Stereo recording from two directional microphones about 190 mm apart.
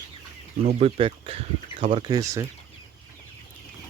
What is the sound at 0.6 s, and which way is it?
Speech, 35° right (ahead or behind).